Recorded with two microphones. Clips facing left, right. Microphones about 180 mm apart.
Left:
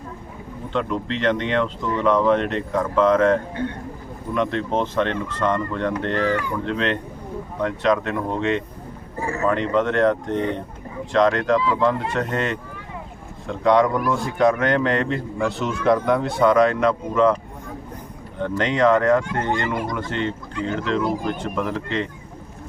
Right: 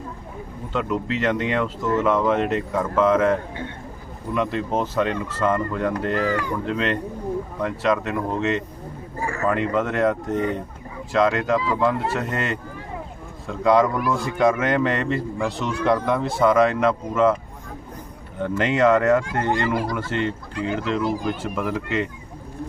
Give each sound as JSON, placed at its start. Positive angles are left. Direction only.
{"t": 0.7, "sound": "a man's voice", "side_deg": -5}
{"t": 4.4, "sound": "a man's voice", "side_deg": -5}
{"t": 9.2, "sound": "speech", "side_deg": 20}
{"t": 9.5, "sound": "a man's voice", "side_deg": -5}
{"t": 18.3, "sound": "a man's voice", "side_deg": -5}
{"t": 19.5, "sound": "speech", "side_deg": -35}
{"t": 19.9, "sound": "a man's voice", "side_deg": -5}